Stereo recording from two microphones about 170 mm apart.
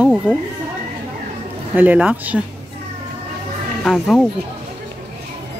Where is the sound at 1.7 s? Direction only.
10° right (ahead or behind).